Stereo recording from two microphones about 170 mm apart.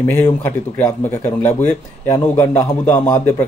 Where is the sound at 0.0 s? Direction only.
10° left (ahead or behind).